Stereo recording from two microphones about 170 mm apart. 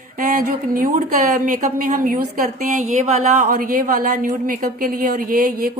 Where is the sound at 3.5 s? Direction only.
55° right (ahead or behind).